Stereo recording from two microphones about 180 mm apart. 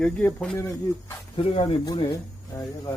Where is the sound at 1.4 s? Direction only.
30° left (ahead or behind).